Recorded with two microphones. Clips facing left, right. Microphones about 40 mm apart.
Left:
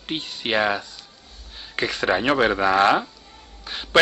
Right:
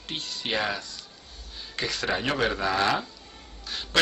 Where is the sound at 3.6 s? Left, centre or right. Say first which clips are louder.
Left 7 dB; left.